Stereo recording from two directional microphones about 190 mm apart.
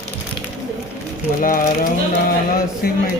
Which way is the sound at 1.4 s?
45° left (ahead or behind).